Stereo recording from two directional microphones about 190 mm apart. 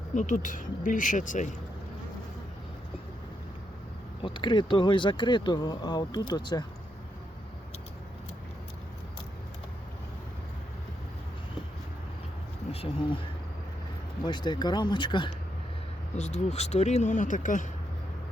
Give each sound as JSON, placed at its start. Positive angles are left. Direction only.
{"t": 0.1, "sound": "speech", "side_deg": 40}
{"t": 4.2, "sound": "speech", "side_deg": 25}
{"t": 12.7, "sound": "speech", "side_deg": 30}
{"t": 14.3, "sound": "speech", "side_deg": 20}
{"t": 16.1, "sound": "speech", "side_deg": 35}